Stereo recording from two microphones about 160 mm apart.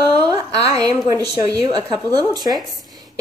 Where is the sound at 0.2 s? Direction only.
25° right (ahead or behind).